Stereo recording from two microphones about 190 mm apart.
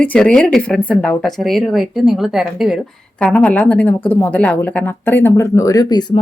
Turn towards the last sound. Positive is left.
turn(degrees=20)  # may be behind; listen again after turning